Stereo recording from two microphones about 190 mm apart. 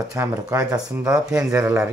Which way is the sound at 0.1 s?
10° right (ahead or behind).